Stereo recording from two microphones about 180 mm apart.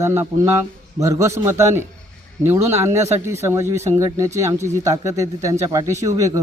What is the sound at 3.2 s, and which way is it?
Speech, 15° right (ahead or behind).